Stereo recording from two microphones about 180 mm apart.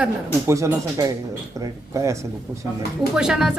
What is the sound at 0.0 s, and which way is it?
Speech, 15° right (ahead or behind).